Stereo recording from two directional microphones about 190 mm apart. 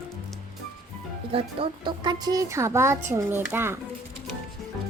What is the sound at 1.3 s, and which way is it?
Speech, 25° right (ahead or behind).